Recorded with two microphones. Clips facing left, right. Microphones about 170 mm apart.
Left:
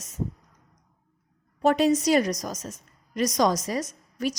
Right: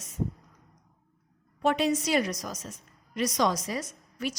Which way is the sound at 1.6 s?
40° left (ahead or behind).